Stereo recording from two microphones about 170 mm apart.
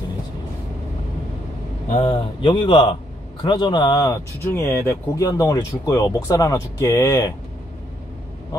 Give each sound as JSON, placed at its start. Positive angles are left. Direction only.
{"t": 2.0, "sound": "speech", "side_deg": 30}